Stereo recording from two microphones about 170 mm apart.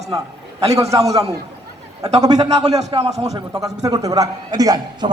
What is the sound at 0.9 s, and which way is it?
A man's voice, 20° right (ahead or behind).